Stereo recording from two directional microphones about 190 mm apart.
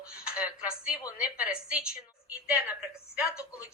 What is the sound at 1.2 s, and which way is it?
A woman's voice, 5° right (ahead or behind).